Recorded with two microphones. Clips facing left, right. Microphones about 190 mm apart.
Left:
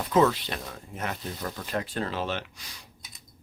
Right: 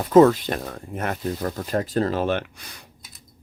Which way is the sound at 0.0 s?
45° right (ahead or behind).